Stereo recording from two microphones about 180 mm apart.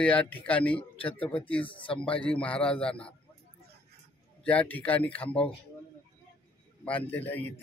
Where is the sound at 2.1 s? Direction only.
5° left (ahead or behind).